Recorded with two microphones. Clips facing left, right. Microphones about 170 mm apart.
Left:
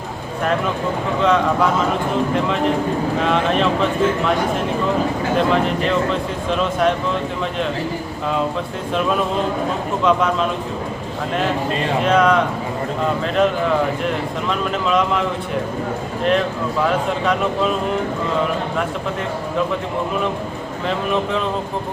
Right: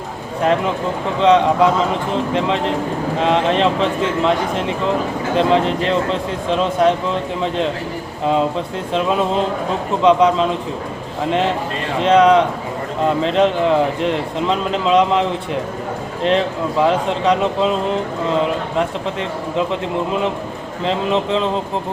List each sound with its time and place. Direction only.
1.2 s speech: 25° right (ahead or behind)
3.2 s speech: 30° right (ahead or behind)
5.4 s speech: 25° right (ahead or behind)
10.0 s speech: 25° right (ahead or behind)
12.0 s speech: 25° right (ahead or behind)
16.8 s speech: 25° right (ahead or behind)
20.8 s speech: 25° right (ahead or behind)